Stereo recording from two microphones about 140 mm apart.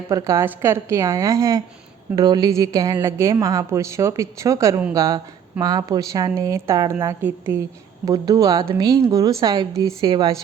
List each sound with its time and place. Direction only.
0.1 s a woman's voice: 25° right (ahead or behind)